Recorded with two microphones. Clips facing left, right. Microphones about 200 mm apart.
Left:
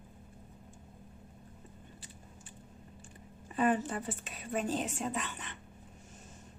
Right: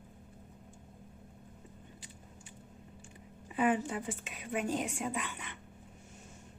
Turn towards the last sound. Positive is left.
turn(degrees=-10)  # may be behind; listen again after turning